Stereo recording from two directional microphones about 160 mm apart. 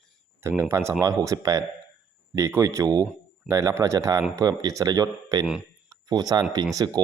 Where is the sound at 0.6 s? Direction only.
15° right (ahead or behind).